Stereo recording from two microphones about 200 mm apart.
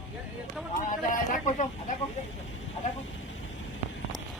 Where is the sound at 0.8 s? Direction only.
40° left (ahead or behind).